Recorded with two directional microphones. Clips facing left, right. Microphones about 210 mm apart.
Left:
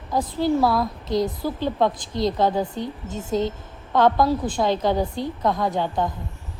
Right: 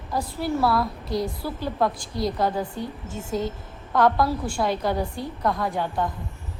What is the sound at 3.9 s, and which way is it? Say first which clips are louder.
Speech: left 2 dB; 20° left (ahead or behind).